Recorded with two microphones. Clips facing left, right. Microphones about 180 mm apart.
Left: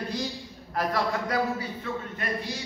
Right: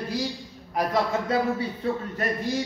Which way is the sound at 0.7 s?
20° right (ahead or behind).